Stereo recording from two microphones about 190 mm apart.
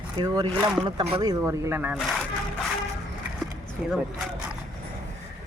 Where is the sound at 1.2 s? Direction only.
15° right (ahead or behind).